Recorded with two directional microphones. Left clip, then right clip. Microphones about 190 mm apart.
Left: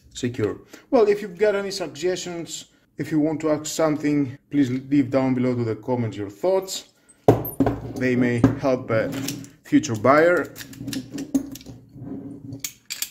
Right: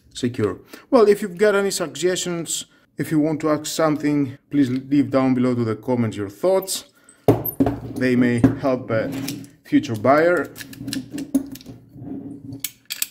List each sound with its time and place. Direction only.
0.1 s speech: 20° right (ahead or behind)
8.0 s speech: 20° right (ahead or behind)